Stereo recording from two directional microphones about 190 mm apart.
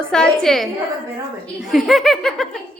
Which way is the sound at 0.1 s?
5° left (ahead or behind).